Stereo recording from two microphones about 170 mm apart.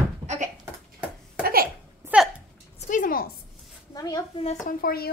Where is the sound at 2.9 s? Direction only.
50° left (ahead or behind).